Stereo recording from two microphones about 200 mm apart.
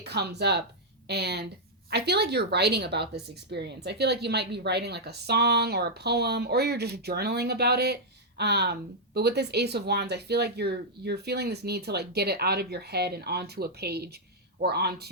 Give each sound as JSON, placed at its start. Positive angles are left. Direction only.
{"t": 0.0, "sound": "speech", "side_deg": -55}